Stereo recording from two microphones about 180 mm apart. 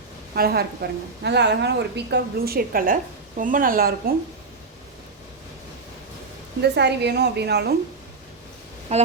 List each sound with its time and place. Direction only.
0.3 s a woman's voice: 60° right (ahead or behind)
6.6 s a woman's voice: 70° right (ahead or behind)
8.9 s speech: 35° right (ahead or behind)